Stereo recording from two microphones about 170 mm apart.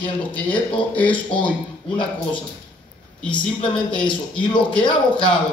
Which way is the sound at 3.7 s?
5° left (ahead or behind).